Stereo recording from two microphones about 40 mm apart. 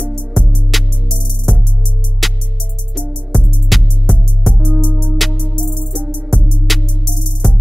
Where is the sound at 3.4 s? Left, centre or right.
Centre.